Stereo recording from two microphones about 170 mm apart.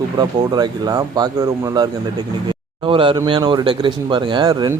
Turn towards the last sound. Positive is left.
turn(degrees=-20)  # may be behind; listen again after turning